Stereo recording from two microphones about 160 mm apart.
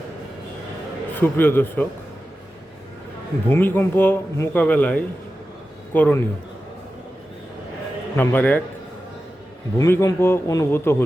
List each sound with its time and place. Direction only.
1.2 s speech: 15° left (ahead or behind)
3.5 s speech: 15° left (ahead or behind)
8.1 s speech: 10° left (ahead or behind)
9.7 s speech: 20° left (ahead or behind)